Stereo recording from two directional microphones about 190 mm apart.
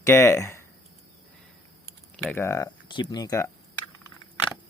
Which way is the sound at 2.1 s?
10° left (ahead or behind).